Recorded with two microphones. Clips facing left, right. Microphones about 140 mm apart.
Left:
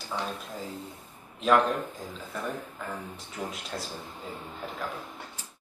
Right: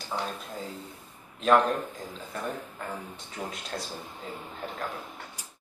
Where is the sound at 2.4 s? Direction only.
5° right (ahead or behind).